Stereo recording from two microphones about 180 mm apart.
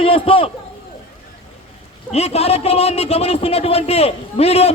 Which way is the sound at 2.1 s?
35° left (ahead or behind).